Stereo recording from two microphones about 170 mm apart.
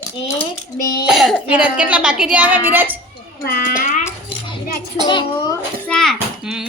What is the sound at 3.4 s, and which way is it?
Speech, 60° left (ahead or behind).